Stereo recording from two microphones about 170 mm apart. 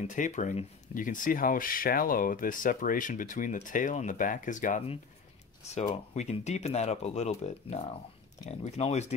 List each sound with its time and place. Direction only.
0.0 s speech: 45° left (ahead or behind)
6.1 s speech: 40° left (ahead or behind)